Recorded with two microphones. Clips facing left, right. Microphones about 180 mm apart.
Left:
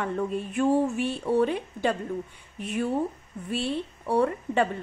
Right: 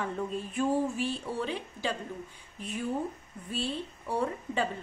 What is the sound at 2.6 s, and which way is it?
A woman's voice, 75° left (ahead or behind).